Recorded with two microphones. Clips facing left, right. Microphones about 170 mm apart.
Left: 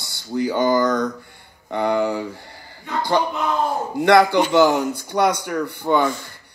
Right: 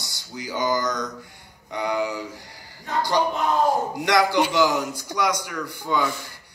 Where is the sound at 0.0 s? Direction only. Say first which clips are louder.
Left 13 dB; 55° left (ahead or behind).